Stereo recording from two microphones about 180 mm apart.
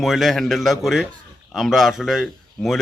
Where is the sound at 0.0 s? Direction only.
Centre (ahead or behind).